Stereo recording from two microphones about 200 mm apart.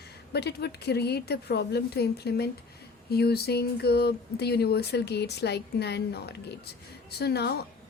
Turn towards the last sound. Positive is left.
turn(degrees=55)  # may be behind; listen again after turning